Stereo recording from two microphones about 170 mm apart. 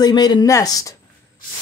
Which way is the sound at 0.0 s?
25° left (ahead or behind).